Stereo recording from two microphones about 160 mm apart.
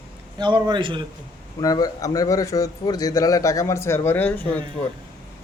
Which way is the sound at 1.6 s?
25° left (ahead or behind).